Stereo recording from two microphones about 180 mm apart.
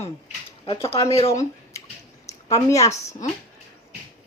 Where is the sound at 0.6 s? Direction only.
30° left (ahead or behind).